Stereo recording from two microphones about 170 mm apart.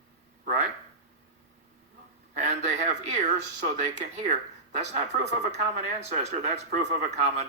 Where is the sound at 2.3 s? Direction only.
40° right (ahead or behind).